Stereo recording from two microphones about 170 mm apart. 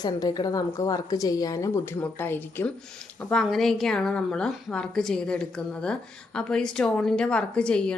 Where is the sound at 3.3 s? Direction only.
Centre (ahead or behind).